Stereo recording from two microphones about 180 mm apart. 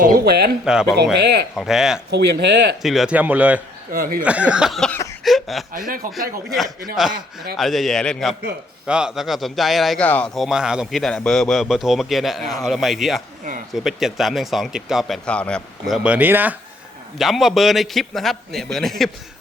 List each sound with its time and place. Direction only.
0.0 s speech: 55° right (ahead or behind)
0.6 s speech: 5° right (ahead or behind)
1.1 s speech: 70° right (ahead or behind)
1.5 s speech: centre (ahead or behind)
2.0 s speech: 65° right (ahead or behind)
2.8 s speech: centre (ahead or behind)
3.9 s speech: 55° right (ahead or behind)
4.2 s speech: 5° right (ahead or behind)
5.2 s a sound: centre (ahead or behind)
5.9 s speech: 55° right (ahead or behind)
7.5 s speech: centre (ahead or behind)
16.0 s speech: 10° right (ahead or behind)